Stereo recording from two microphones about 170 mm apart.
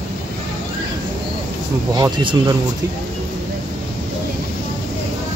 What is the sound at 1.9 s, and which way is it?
Speech, 25° right (ahead or behind).